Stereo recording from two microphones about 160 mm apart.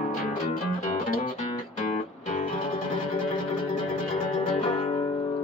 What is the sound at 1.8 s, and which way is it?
Music, 50° left (ahead or behind).